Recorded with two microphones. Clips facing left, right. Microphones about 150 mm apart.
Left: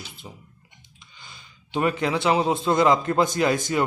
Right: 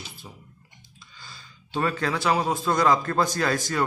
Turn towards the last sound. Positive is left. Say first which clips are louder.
# left 4 dB
turn(degrees=20)  # may be behind; listen again after turning